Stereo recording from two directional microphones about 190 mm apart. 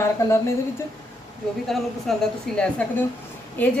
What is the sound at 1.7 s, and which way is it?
Speech, centre (ahead or behind).